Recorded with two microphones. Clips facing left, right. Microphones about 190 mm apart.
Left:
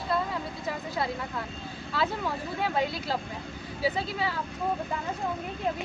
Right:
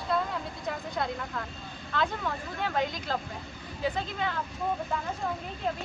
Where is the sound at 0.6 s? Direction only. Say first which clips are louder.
Left 1 dB; 5° left (ahead or behind).